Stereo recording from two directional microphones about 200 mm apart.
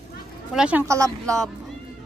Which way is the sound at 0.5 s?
5° right (ahead or behind).